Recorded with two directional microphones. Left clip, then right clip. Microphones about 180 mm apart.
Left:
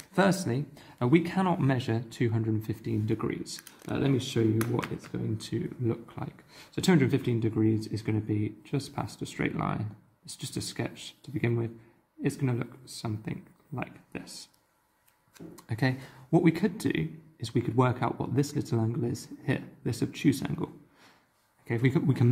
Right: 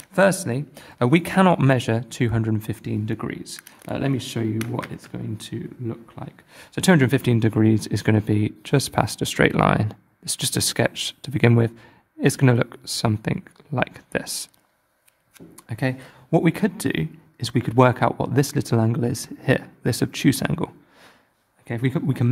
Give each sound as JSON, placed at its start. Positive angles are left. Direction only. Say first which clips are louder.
{"t": 0.1, "sound": "speech", "louder": "right 8 dB", "side_deg": -40}
{"t": 5.8, "sound": "speech", "louder": "left 1 dB", "side_deg": -10}
{"t": 6.5, "sound": "speech", "louder": "right 8 dB", "side_deg": -45}
{"t": 15.3, "sound": "speech", "louder": "right 3 dB", "side_deg": -30}
{"t": 21.6, "sound": "a man's voice", "louder": "right 3 dB", "side_deg": -30}